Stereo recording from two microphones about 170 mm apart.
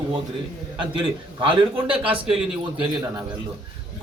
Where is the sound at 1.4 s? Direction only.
30° right (ahead or behind).